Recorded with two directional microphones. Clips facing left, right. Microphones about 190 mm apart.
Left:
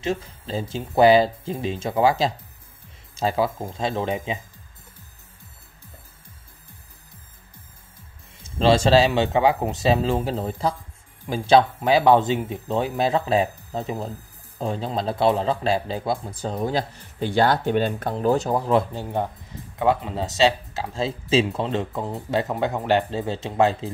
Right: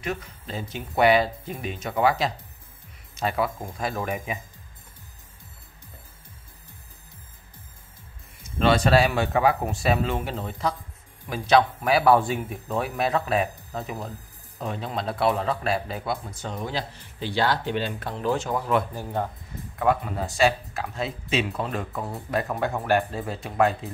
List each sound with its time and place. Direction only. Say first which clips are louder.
0.0 s speech: left 5 dB; 25° left (ahead or behind)
8.4 s speech: left 3 dB; 30° left (ahead or behind)